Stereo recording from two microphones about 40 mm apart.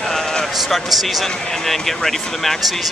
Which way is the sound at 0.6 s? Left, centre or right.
Centre.